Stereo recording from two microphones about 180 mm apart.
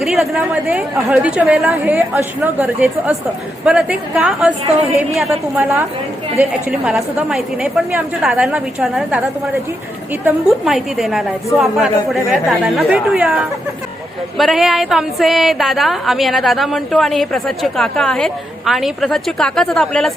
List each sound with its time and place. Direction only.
0.0 s a woman's voice: centre (ahead or behind)
6.7 s a woman's voice: 5° right (ahead or behind)